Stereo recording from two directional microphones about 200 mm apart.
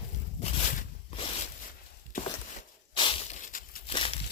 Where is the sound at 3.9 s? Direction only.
30° left (ahead or behind).